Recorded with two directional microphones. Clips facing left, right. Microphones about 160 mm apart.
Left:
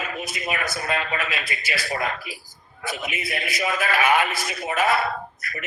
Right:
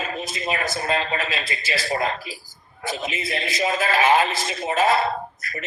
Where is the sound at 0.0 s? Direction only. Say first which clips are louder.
Right 2 dB; 30° right (ahead or behind).